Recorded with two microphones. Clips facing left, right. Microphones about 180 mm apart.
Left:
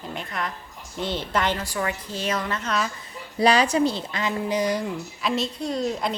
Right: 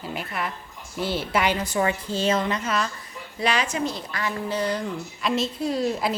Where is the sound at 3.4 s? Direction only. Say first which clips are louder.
Left 6 dB; 35° left (ahead or behind); by 4.9 s 15° left (ahead or behind).